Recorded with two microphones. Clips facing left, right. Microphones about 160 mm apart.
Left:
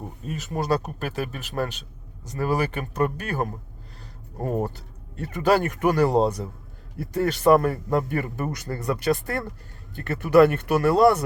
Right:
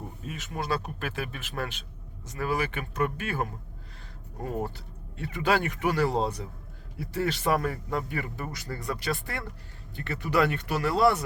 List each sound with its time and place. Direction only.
0.3 s speech: centre (ahead or behind)
0.5 s speech: 45° left (ahead or behind)